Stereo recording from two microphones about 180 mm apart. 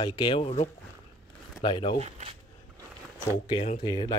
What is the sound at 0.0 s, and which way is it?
Speech, 25° left (ahead or behind).